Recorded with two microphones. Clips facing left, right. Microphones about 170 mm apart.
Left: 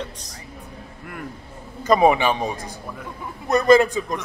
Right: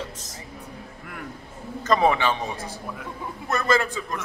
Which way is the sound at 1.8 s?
10° left (ahead or behind).